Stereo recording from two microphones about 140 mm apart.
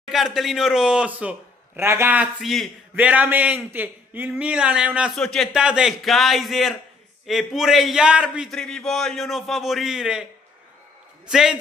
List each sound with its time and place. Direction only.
0.1 s a man's voice: centre (ahead or behind)
1.8 s speech: 20° right (ahead or behind)
2.4 s a man's voice: centre (ahead or behind)
3.0 s a man's voice: 10° right (ahead or behind)
8.5 s a man's voice: 5° left (ahead or behind)
11.2 s a man's voice: 5° right (ahead or behind)